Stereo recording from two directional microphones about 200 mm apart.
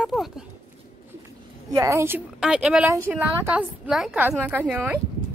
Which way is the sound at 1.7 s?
15° right (ahead or behind).